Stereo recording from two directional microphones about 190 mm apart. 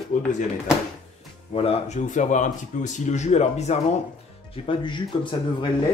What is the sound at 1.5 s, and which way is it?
Speech, 30° left (ahead or behind).